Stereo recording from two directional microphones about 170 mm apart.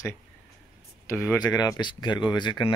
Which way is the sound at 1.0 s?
15° left (ahead or behind).